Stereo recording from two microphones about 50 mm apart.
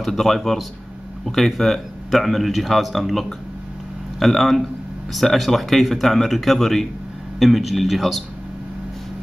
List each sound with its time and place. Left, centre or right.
0.0 s a man's voice: centre